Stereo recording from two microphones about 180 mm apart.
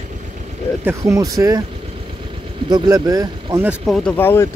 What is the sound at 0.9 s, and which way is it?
Speech, 15° right (ahead or behind).